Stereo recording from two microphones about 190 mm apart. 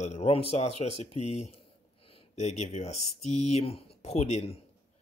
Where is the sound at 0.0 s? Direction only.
35° left (ahead or behind).